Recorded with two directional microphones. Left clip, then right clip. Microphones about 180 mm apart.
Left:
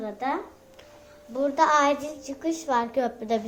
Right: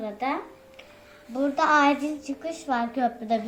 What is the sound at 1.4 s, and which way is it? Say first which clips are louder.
A woman's voice: even; 30° left (ahead or behind).